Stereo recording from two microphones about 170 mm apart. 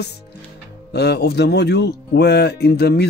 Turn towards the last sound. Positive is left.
turn(degrees=70)  # may be behind; listen again after turning